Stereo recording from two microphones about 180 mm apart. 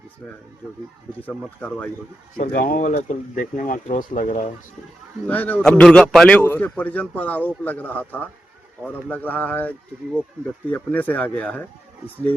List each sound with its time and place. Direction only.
1.5 s speech: 5° left (ahead or behind)
2.3 s speech: 50° left (ahead or behind)
5.3 s a man's voice: 10° left (ahead or behind)